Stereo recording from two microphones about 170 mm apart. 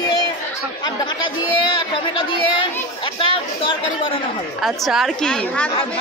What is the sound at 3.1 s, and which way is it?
Speech, 30° left (ahead or behind).